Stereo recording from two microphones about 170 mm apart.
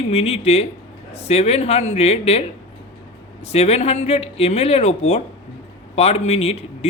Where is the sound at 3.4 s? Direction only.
40° left (ahead or behind).